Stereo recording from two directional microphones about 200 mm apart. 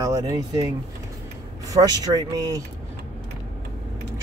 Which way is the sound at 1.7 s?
20° right (ahead or behind).